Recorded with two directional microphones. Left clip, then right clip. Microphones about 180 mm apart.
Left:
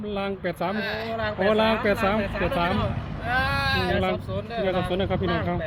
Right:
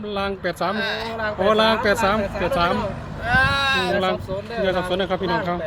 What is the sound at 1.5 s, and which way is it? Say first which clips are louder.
Speech: right 5 dB; 5° right (ahead or behind).